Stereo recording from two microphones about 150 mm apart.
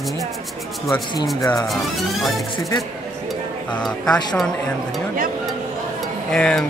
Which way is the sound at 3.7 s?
5° left (ahead or behind).